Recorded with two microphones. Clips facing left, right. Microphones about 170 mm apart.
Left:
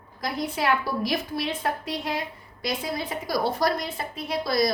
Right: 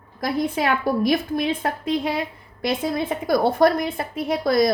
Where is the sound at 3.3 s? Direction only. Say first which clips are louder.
Right 7 dB; 55° right (ahead or behind).